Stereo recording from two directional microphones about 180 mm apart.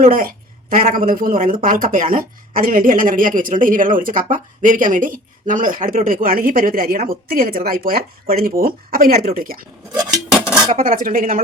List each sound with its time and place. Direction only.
0.0 s speech: 50° right (ahead or behind)
9.9 s dishes: 20° right (ahead or behind)
10.8 s speech: 50° right (ahead or behind)